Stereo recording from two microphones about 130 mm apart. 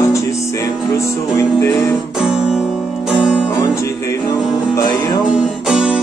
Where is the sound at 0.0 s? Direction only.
25° left (ahead or behind).